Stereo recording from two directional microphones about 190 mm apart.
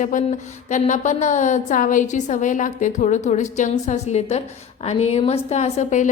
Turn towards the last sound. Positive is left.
turn(degrees=40)  # may be behind; listen again after turning